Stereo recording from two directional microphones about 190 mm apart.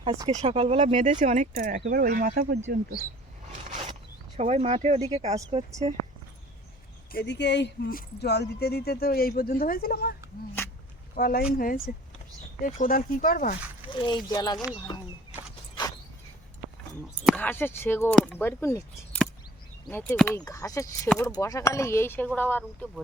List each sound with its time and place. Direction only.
0.0 s speech: 30° right (ahead or behind); by 2.6 s 50° right (ahead or behind)
4.4 s speech: 35° right (ahead or behind)
7.1 s speech: 65° left (ahead or behind)
11.1 s speech: 50° left (ahead or behind)
13.9 s speech: 25° left (ahead or behind)
17.3 s speech: 10° left (ahead or behind)